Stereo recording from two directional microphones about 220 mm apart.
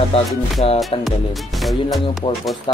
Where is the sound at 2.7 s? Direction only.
20° left (ahead or behind).